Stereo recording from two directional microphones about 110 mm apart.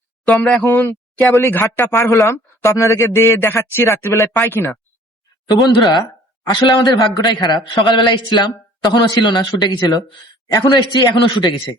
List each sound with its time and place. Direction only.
0.3 s a man's voice: 10° left (ahead or behind)
5.6 s a man's voice: 40° left (ahead or behind)